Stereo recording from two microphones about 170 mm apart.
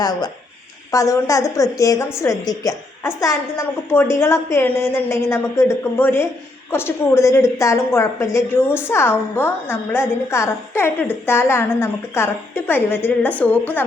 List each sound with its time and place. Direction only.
0.0 s a woman's voice: 25° left (ahead or behind)